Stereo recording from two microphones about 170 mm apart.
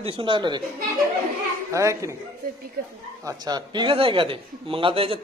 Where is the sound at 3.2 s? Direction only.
20° right (ahead or behind).